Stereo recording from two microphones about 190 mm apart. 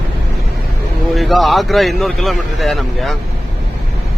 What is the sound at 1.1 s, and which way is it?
Speech, centre (ahead or behind).